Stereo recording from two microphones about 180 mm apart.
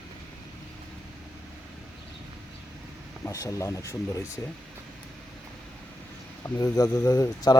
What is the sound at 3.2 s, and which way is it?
Speech, 15° left (ahead or behind).